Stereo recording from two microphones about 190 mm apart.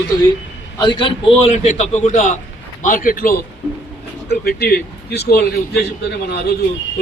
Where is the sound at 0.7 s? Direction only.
25° left (ahead or behind).